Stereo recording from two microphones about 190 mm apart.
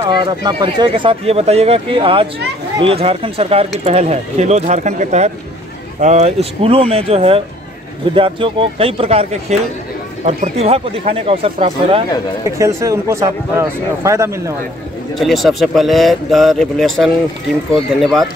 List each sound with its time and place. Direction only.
0.0 s speech: 25° right (ahead or behind)
12.4 s a man's voice: 15° right (ahead or behind)
15.1 s speech: centre (ahead or behind)